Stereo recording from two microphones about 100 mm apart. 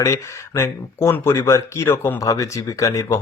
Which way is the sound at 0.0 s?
25° left (ahead or behind).